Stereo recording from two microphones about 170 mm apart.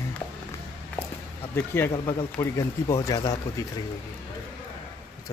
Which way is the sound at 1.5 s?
15° left (ahead or behind).